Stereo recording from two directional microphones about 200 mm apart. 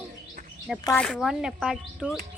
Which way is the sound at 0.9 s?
5° left (ahead or behind).